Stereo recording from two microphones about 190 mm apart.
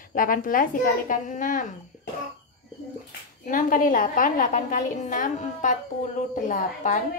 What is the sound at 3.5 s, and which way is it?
A woman's voice, 45° left (ahead or behind).